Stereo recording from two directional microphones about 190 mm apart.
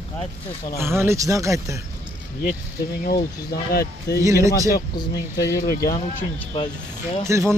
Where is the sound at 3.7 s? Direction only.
55° left (ahead or behind).